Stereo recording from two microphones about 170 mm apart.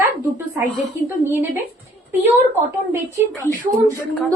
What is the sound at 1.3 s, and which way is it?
Speech, 15° right (ahead or behind).